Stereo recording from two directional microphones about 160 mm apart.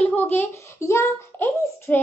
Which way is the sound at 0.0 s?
10° left (ahead or behind).